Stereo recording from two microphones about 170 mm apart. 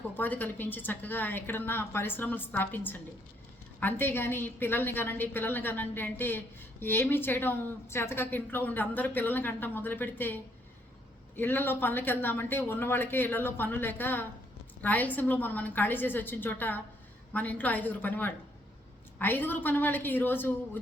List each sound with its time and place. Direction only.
0.1 s a woman's voice: 10° left (ahead or behind)